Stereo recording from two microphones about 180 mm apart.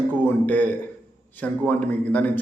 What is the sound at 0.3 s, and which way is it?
A man's voice, 10° left (ahead or behind).